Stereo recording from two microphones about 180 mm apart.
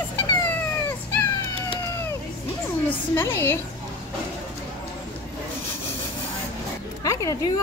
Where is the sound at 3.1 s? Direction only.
15° left (ahead or behind).